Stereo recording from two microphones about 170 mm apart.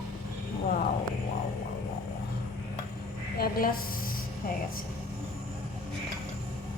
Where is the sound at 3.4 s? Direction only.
60° left (ahead or behind).